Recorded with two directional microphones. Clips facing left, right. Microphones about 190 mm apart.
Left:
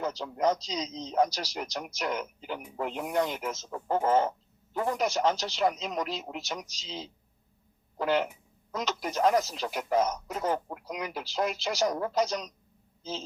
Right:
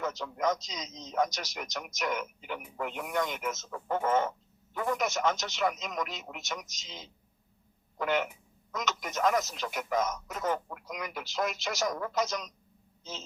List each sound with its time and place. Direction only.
0.0 s speech: 35° left (ahead or behind)